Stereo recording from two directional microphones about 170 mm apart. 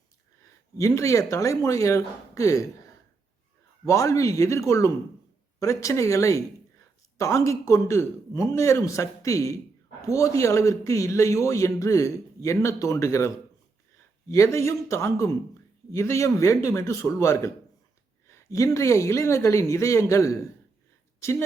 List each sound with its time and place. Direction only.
0.8 s a man's voice: 20° left (ahead or behind)
3.8 s a man's voice: 20° left (ahead or behind)